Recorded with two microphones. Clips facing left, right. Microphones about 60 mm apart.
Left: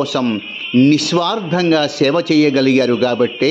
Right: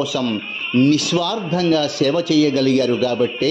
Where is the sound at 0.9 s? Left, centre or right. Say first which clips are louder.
Left 3 dB; left.